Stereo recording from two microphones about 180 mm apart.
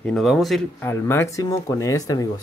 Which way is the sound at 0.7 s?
15° left (ahead or behind).